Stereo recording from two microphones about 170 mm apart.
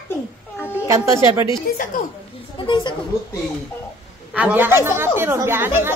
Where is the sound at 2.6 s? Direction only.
25° left (ahead or behind).